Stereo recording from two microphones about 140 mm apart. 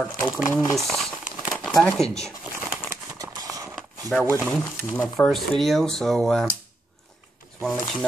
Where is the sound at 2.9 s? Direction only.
25° right (ahead or behind).